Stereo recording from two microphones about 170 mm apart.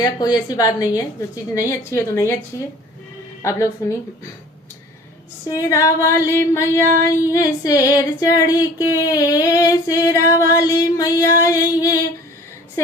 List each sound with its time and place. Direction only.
0.0 s female singing: 25° left (ahead or behind)
1.5 s a woman's voice: 20° left (ahead or behind)
3.4 s a woman's voice: 15° left (ahead or behind)
5.5 s female singing: 20° left (ahead or behind)
6.1 s a woman's voice: 20° left (ahead or behind)
7.0 s female singing: 20° left (ahead or behind)